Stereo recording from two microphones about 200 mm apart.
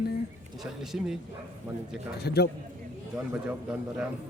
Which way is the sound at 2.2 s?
55° left (ahead or behind).